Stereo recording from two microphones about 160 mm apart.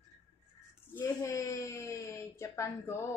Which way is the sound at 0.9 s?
20° left (ahead or behind).